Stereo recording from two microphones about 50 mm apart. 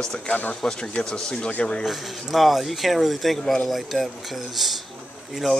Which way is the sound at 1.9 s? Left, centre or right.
Centre.